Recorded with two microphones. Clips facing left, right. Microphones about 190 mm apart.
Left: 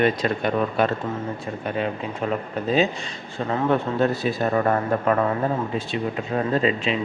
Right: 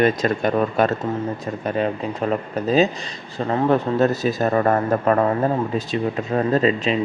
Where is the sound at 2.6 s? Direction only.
40° right (ahead or behind).